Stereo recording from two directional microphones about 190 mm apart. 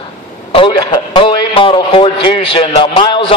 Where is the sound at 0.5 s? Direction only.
25° left (ahead or behind).